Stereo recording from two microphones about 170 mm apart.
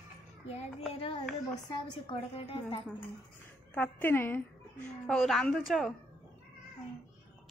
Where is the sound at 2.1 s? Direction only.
30° left (ahead or behind).